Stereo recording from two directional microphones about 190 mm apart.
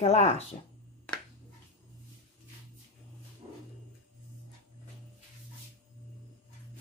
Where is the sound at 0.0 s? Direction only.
35° left (ahead or behind).